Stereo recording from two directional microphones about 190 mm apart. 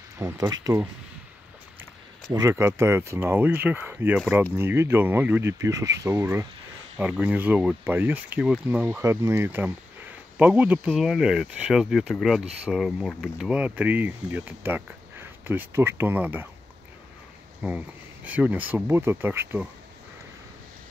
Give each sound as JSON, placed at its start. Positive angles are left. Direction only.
{"t": 0.2, "sound": "speech", "side_deg": -15}
{"t": 2.3, "sound": "speech", "side_deg": -15}
{"t": 17.6, "sound": "speech", "side_deg": -10}